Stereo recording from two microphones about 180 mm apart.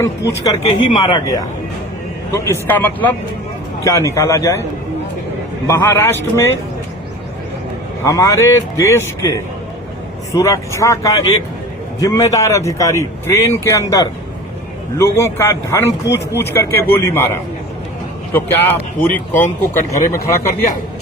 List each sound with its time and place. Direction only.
0.0 s a man's voice: 15° left (ahead or behind)
5.6 s a man's voice: 15° left (ahead or behind)
8.0 s a man's voice: 20° left (ahead or behind)
18.3 s a man's voice: 10° left (ahead or behind)